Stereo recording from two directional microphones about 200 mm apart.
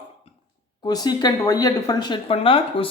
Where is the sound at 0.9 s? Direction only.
20° left (ahead or behind).